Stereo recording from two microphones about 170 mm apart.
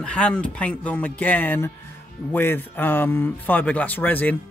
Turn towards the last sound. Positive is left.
turn(degrees=10)  # may be behind; listen again after turning